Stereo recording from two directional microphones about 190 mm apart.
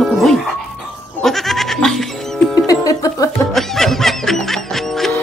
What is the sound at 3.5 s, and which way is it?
Music, centre (ahead or behind).